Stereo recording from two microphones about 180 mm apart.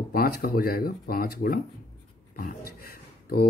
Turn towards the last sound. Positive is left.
turn(degrees=55)  # may be behind; listen again after turning